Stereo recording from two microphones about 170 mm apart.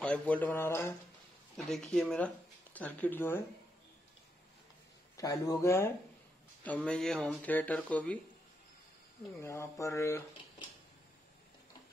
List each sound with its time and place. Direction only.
0.0 s speech: 10° left (ahead or behind)
1.7 s speech: 5° left (ahead or behind)
5.1 s speech: 20° left (ahead or behind)
9.4 s speech: 15° left (ahead or behind)